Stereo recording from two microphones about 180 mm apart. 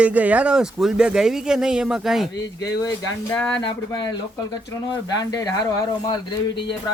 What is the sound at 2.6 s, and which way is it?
Speech, 20° left (ahead or behind).